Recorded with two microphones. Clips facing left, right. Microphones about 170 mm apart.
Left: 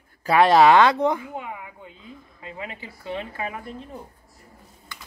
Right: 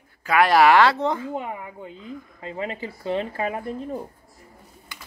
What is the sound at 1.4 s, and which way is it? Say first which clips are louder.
Speech: right 4 dB; 35° right (ahead or behind).